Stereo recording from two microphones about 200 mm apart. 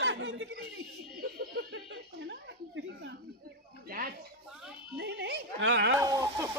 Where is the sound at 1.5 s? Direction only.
55° right (ahead or behind).